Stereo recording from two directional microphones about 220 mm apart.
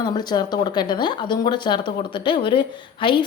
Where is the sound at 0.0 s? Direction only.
20° left (ahead or behind).